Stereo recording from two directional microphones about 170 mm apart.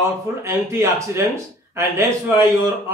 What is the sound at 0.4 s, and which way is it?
A man's voice, 15° right (ahead or behind).